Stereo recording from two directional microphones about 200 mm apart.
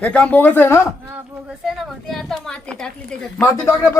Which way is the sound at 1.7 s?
Centre (ahead or behind).